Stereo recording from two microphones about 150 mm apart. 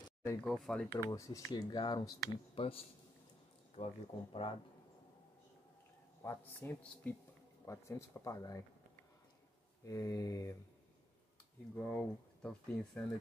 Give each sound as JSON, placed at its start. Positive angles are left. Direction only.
{"t": 0.2, "sound": "speech", "side_deg": 15}
{"t": 0.5, "sound": "speech", "side_deg": 5}
{"t": 3.7, "sound": "speech", "side_deg": 40}
{"t": 6.2, "sound": "speech", "side_deg": 15}
{"t": 9.8, "sound": "speech", "side_deg": 25}
{"t": 11.7, "sound": "speech", "side_deg": 5}